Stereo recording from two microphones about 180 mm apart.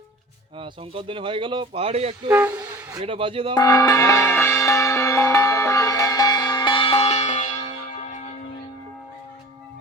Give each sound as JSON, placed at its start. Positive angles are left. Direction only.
{"t": 0.6, "sound": "speech", "side_deg": -30}
{"t": 2.5, "sound": "speech", "side_deg": -10}
{"t": 3.0, "sound": "speech", "side_deg": -30}
{"t": 3.5, "sound": "music", "side_deg": 20}
{"t": 7.9, "sound": "church bell", "side_deg": 40}